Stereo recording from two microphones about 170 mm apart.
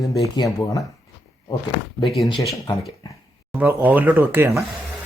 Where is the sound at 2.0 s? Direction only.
Centre (ahead or behind).